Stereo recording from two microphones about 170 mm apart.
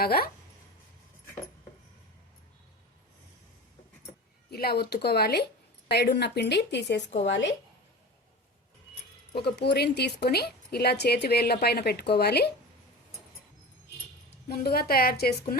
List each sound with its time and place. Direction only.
0.0 s a woman's voice: 65° left (ahead or behind)
4.5 s a woman's voice: 65° left (ahead or behind); by 7.0 s 90° left
9.3 s a woman's voice: 75° left (ahead or behind)
14.4 s a woman's voice: 65° left (ahead or behind)